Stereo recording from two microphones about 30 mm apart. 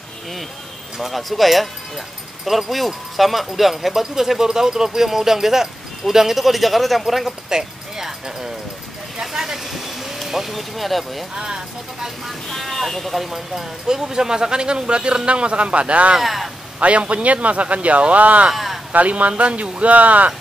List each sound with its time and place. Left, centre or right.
1.1 s speech: centre
7.4 s speech: centre
9.7 s vehicle: centre
10.2 s speech: centre
11.3 s speech: right
12.6 s speech: centre
13.8 s a man's voice: centre; by 16.2 s right
16.2 s speech: centre
17.1 s speech: right
18.5 s a sound: centre
18.9 s speech: right
19.8 s speech: right